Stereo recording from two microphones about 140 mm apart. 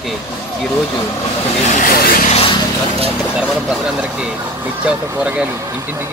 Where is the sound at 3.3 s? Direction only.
5° right (ahead or behind).